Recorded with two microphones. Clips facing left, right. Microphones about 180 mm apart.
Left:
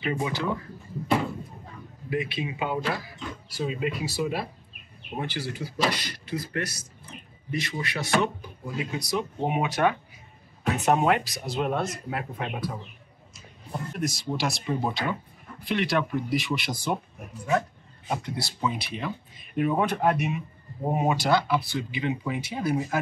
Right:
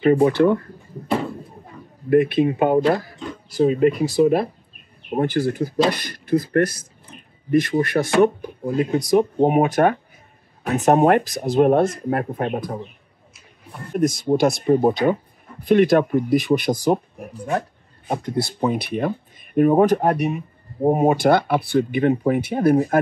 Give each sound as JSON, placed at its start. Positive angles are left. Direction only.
{"t": 0.0, "sound": "speech", "side_deg": -55}
{"t": 2.0, "sound": "speech", "side_deg": -55}
{"t": 13.9, "sound": "speech", "side_deg": -50}
{"t": 18.2, "sound": "speech", "side_deg": -50}
{"t": 20.9, "sound": "speech", "side_deg": -50}